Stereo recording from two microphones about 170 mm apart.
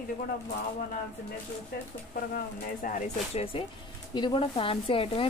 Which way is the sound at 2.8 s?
50° left (ahead or behind).